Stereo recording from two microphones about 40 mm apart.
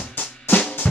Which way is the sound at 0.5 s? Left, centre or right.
Left.